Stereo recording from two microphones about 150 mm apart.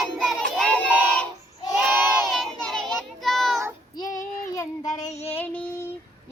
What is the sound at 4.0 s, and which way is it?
Child singing, 25° left (ahead or behind).